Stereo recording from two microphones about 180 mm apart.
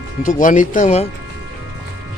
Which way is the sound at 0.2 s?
45° left (ahead or behind).